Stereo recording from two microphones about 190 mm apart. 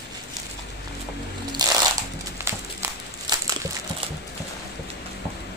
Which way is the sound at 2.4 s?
15° right (ahead or behind).